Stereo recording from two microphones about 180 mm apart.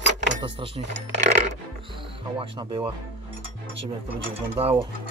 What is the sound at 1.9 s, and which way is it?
Speech, 30° right (ahead or behind).